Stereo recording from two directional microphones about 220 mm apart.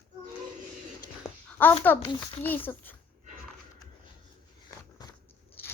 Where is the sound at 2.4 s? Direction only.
10° left (ahead or behind).